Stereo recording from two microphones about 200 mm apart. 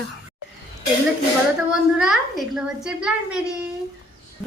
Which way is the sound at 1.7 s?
Centre (ahead or behind).